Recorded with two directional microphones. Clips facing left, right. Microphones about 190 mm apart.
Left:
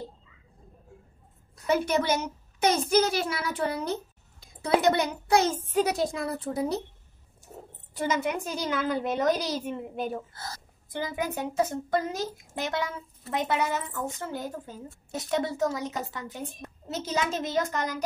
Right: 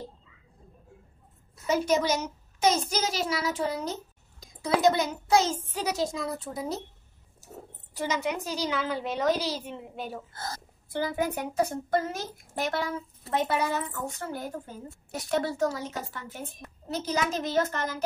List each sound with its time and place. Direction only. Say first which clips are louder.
1.7 s a child's voice: even; 60° left (ahead or behind)
7.9 s a woman's voice: left 2 dB; 55° left (ahead or behind)
10.3 s speech: right 3 dB; 50° right (ahead or behind)
10.9 s a child's voice: right 3 dB; 20° left (ahead or behind)